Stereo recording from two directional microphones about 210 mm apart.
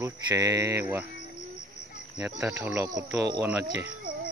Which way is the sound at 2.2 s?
15° right (ahead or behind).